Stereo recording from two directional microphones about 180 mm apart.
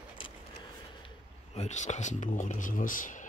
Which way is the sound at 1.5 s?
40° left (ahead or behind).